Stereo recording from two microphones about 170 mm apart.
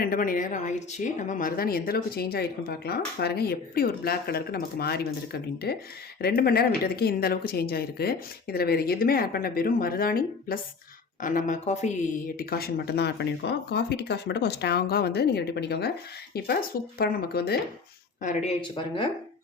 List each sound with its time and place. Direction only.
0.0 s speech: 55° left (ahead or behind)
12.4 s speech: 60° left (ahead or behind)
18.2 s speech: 50° left (ahead or behind)